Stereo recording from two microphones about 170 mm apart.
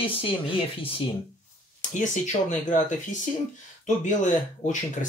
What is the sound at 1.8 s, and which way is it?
Speech, 45° left (ahead or behind).